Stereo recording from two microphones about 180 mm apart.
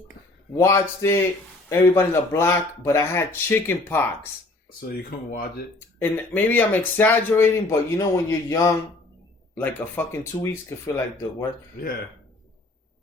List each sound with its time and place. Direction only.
0.5 s speech: 15° left (ahead or behind)
5.3 s speech: 55° left (ahead or behind)
6.0 s speech: 10° left (ahead or behind)